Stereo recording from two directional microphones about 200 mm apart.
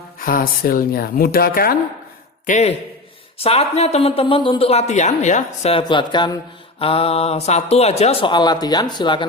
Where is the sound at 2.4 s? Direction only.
35° left (ahead or behind).